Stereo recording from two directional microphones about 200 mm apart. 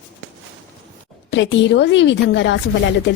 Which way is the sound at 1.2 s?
65° left (ahead or behind).